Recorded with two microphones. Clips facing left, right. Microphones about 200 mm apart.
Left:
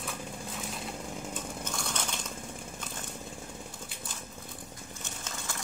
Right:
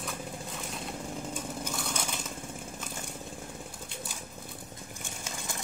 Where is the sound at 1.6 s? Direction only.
5° right (ahead or behind).